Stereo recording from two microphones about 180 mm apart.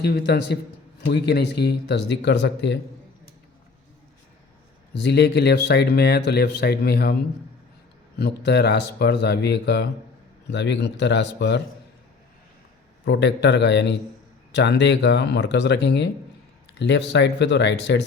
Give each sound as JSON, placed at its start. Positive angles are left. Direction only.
{"t": 0.0, "sound": "speech", "side_deg": 65}
{"t": 5.0, "sound": "speech", "side_deg": 65}
{"t": 8.2, "sound": "speech", "side_deg": 65}
{"t": 13.1, "sound": "speech", "side_deg": 75}